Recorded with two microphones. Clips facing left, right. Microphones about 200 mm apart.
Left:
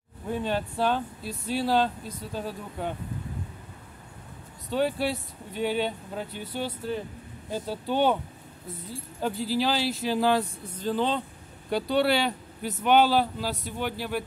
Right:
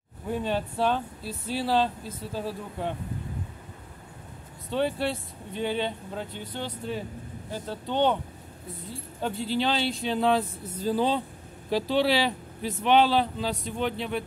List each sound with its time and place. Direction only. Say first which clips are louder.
0.3 s speech: even; centre (ahead or behind)
4.6 s speech: left 1 dB; centre (ahead or behind)